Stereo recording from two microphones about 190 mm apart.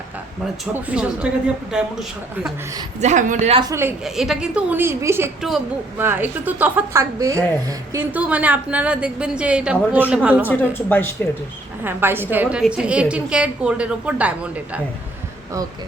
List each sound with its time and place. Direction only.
0.6 s a woman's voice: 5° right (ahead or behind)
3.0 s a woman's voice: 40° right (ahead or behind)
3.6 s a woman's voice: 15° right (ahead or behind)
4.0 s a woman's voice: centre (ahead or behind)
5.4 s a woman's voice: centre (ahead or behind)
10.5 s a woman's voice: 10° left (ahead or behind)
11.8 s a woman's voice: 10° right (ahead or behind)